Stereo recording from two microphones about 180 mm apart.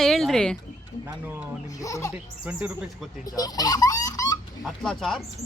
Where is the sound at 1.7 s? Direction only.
20° left (ahead or behind).